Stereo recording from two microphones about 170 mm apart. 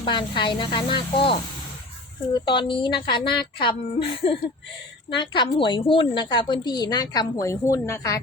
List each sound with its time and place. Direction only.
0.0 s a woman's voice: 30° left (ahead or behind)